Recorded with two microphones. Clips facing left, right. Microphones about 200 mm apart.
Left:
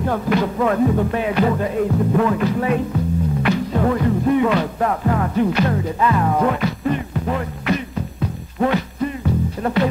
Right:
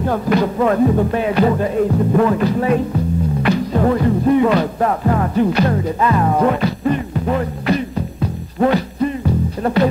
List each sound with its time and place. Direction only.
0.1 s music: 35° right (ahead or behind)
8.5 s music: 35° right (ahead or behind)